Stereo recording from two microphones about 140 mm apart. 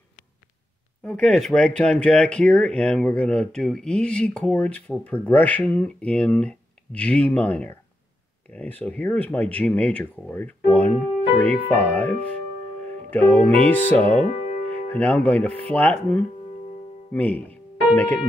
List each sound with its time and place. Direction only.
1.0 s speech: 5° left (ahead or behind)